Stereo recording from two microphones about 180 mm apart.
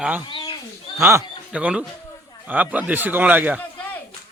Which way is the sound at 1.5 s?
5° right (ahead or behind).